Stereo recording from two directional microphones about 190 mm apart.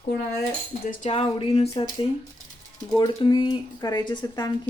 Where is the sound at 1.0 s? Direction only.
35° left (ahead or behind).